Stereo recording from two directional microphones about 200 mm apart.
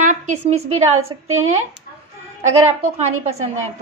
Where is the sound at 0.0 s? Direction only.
35° right (ahead or behind).